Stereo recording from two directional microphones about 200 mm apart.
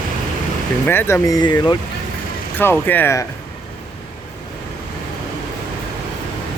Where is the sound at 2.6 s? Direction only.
10° left (ahead or behind).